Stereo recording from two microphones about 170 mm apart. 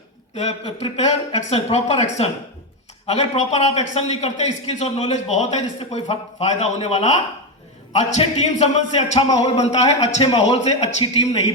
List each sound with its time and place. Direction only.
0.6 s a man's voice: 35° left (ahead or behind)